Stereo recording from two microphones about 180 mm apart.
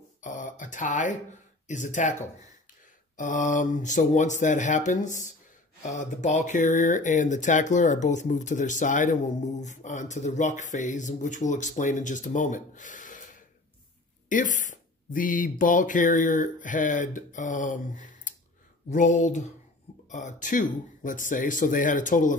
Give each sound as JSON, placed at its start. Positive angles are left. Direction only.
{"t": 0.2, "sound": "speech", "side_deg": 45}